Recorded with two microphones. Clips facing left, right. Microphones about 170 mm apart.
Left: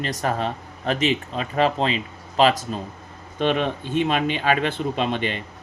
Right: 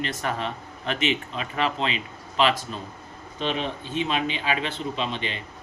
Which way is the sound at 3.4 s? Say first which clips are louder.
Left 6 dB; 55° left (ahead or behind).